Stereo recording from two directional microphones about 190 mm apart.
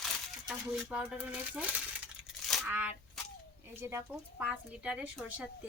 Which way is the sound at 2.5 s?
Centre (ahead or behind).